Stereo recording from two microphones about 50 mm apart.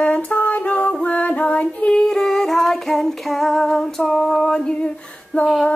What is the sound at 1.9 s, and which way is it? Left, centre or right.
Female singing, centre.